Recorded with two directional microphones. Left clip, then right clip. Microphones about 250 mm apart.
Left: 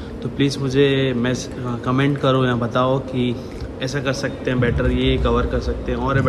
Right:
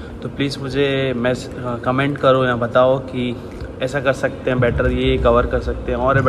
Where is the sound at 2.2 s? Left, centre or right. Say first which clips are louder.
Right 7 dB; centre.